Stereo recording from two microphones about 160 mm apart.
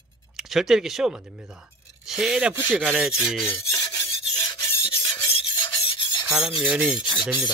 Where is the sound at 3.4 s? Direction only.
20° left (ahead or behind).